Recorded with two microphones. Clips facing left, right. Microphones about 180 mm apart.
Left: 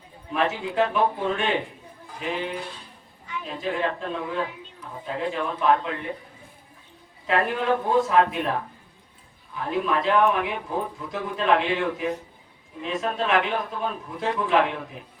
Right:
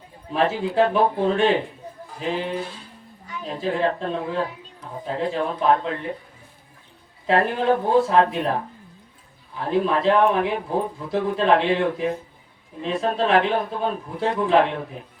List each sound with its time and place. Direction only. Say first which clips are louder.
0.3 s a man's voice: right 4 dB; 35° right (ahead or behind)
7.3 s a man's voice: right 4 dB; 35° right (ahead or behind)
9.6 s a man's voice: right 4 dB; 30° right (ahead or behind)